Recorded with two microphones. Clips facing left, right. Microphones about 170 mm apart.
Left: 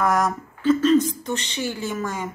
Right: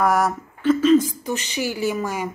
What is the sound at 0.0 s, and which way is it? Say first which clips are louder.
A woman's voice: right 2 dB; 10° right (ahead or behind).